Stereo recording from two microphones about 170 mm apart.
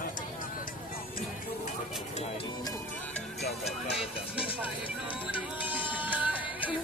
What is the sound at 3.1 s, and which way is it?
Music, centre (ahead or behind).